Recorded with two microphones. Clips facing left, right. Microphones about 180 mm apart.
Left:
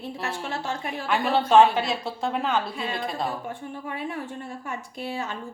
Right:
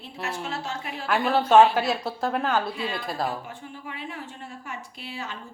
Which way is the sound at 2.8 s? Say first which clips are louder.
Even; 50° left (ahead or behind).